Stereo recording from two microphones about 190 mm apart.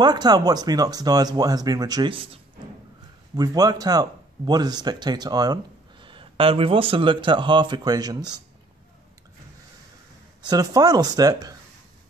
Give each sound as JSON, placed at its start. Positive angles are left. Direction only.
{"t": 0.0, "sound": "speech", "side_deg": -20}
{"t": 10.4, "sound": "speech", "side_deg": -20}